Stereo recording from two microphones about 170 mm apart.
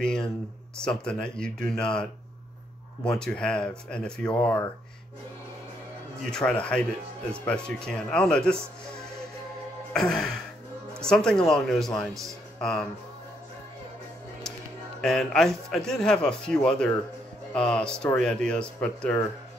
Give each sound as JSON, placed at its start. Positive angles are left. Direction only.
{"t": 0.0, "sound": "a man's voice", "side_deg": 5}
{"t": 3.1, "sound": "a man's voice", "side_deg": 5}
{"t": 6.3, "sound": "a man's voice", "side_deg": 5}
{"t": 9.9, "sound": "a man's voice", "side_deg": 5}
{"t": 12.1, "sound": "speech", "side_deg": -20}
{"t": 12.5, "sound": "speech", "side_deg": 5}
{"t": 15.0, "sound": "a man's voice", "side_deg": 0}